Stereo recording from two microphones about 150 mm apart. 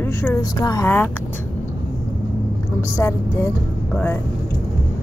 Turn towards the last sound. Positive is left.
turn(degrees=20)  # may be behind; listen again after turning